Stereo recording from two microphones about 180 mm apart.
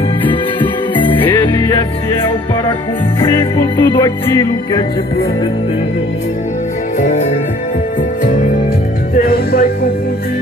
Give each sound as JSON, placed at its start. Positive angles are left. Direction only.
{"t": 3.3, "sound": "music", "side_deg": 25}
{"t": 7.0, "sound": "music", "side_deg": 40}
{"t": 9.1, "sound": "music", "side_deg": 55}